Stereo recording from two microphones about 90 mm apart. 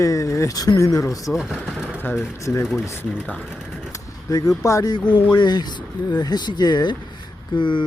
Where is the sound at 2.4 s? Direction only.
35° left (ahead or behind).